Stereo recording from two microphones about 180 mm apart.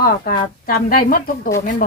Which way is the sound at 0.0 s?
55° left (ahead or behind).